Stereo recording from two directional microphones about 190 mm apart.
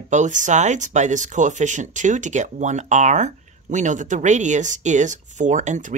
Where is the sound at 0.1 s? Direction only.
40° right (ahead or behind).